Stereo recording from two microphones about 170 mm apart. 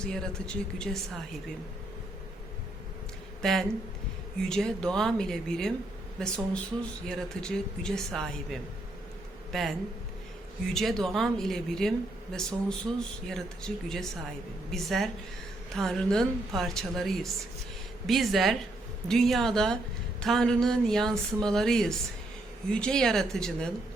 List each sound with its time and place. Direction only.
0.0 s speech: 5° left (ahead or behind)
3.4 s speech: centre (ahead or behind)